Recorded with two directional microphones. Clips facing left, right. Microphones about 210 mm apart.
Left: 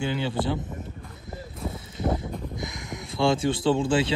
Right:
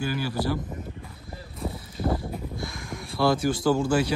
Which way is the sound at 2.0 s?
25° left (ahead or behind).